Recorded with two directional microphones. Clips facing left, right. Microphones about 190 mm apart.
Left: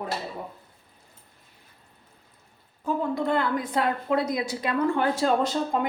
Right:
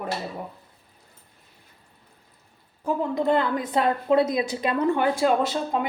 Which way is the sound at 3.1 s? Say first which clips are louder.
Right 5 dB; 20° right (ahead or behind).